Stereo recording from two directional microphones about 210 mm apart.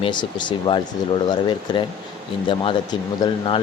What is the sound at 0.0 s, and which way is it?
Speech, 20° left (ahead or behind).